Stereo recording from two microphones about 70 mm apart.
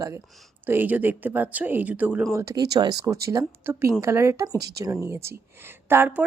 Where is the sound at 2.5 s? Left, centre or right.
Right.